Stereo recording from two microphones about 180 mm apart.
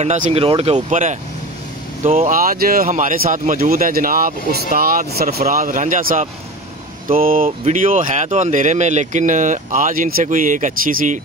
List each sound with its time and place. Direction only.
0.0 s speech: 40° right (ahead or behind)
2.3 s speech: 55° right (ahead or behind)